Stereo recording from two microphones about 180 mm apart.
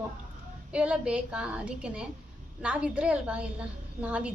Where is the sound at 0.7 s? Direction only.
5° right (ahead or behind).